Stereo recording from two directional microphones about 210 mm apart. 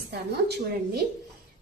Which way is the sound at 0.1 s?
50° right (ahead or behind).